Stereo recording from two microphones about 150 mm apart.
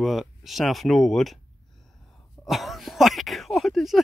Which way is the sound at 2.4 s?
Centre (ahead or behind).